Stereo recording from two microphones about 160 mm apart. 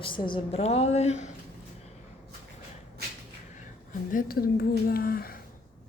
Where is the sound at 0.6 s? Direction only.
40° left (ahead or behind).